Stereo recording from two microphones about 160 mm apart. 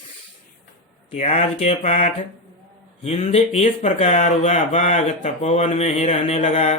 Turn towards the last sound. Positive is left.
turn(degrees=45)  # may be behind; listen again after turning